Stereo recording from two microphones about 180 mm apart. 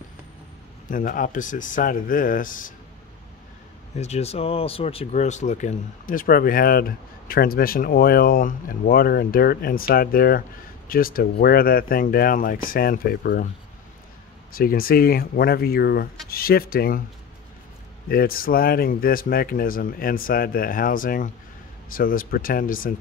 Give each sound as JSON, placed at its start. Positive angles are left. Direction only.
{"t": 0.8, "sound": "speech", "side_deg": 50}
{"t": 3.9, "sound": "speech", "side_deg": 35}
{"t": 14.5, "sound": "speech", "side_deg": 55}
{"t": 18.0, "sound": "speech", "side_deg": 55}